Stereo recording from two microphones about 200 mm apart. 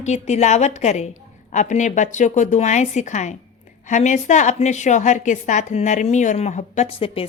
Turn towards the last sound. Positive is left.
turn(degrees=30)  # may be behind; listen again after turning